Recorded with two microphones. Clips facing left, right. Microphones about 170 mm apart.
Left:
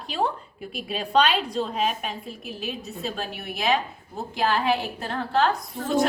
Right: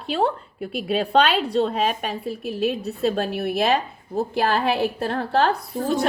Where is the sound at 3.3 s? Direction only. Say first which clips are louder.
Right 5 dB; 60° right (ahead or behind).